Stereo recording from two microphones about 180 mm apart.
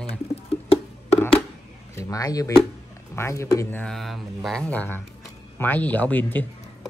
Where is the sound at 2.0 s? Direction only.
20° left (ahead or behind).